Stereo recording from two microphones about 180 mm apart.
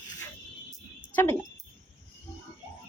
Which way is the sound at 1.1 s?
10° left (ahead or behind).